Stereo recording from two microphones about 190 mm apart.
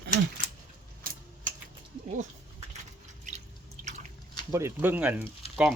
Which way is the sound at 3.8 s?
50° right (ahead or behind).